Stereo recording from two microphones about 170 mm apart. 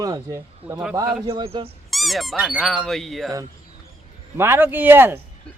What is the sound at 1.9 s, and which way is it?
Speech, centre (ahead or behind).